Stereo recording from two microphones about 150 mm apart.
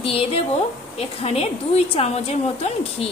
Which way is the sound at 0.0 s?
40° left (ahead or behind).